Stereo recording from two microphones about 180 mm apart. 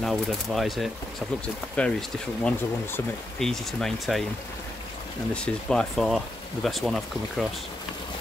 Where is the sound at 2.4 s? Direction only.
5° left (ahead or behind).